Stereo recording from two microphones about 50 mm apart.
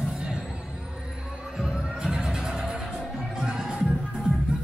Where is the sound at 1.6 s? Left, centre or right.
Centre.